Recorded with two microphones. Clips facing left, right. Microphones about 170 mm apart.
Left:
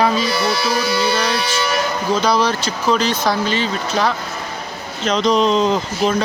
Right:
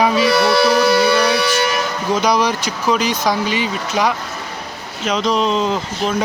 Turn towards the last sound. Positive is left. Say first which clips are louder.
# left 2 dB
turn(degrees=0)  # may be behind; listen again after turning